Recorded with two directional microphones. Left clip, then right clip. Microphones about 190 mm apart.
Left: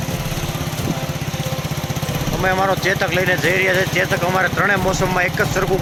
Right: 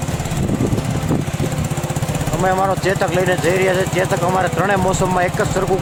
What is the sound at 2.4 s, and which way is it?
Speech, 15° right (ahead or behind).